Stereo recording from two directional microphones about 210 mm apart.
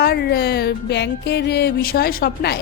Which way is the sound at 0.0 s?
50° left (ahead or behind).